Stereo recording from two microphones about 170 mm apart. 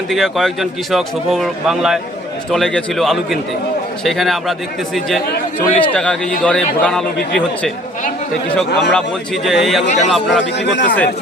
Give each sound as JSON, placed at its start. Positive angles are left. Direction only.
{"t": 0.1, "sound": "a man's voice", "side_deg": 0}
{"t": 8.5, "sound": "a man's voice", "side_deg": 5}
{"t": 9.8, "sound": "speech", "side_deg": 45}
{"t": 10.2, "sound": "a man's voice", "side_deg": 90}